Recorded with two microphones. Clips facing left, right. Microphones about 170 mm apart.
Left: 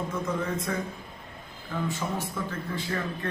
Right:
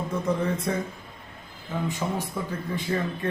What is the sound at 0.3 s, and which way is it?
Speech, 35° right (ahead or behind).